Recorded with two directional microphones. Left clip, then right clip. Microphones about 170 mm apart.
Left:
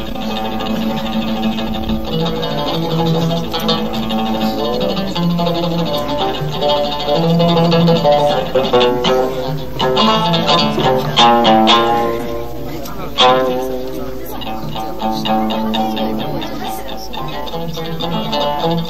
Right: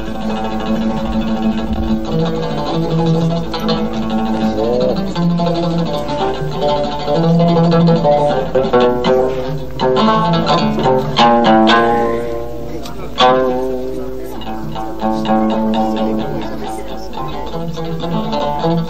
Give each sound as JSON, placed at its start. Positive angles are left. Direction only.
{"t": 2.4, "sound": "music", "side_deg": 40}
{"t": 6.2, "sound": "music", "side_deg": 45}
{"t": 13.2, "sound": "music", "side_deg": 35}
{"t": 15.0, "sound": "music", "side_deg": 40}
{"t": 18.3, "sound": "music", "side_deg": 40}